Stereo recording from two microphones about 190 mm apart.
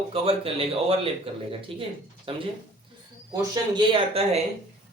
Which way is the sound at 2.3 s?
30° right (ahead or behind).